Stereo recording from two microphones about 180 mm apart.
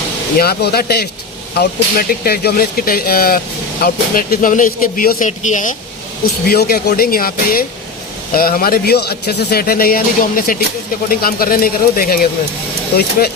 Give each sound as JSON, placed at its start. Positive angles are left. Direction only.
{"t": 0.3, "sound": "speech", "side_deg": 60}
{"t": 6.5, "sound": "speech", "side_deg": 60}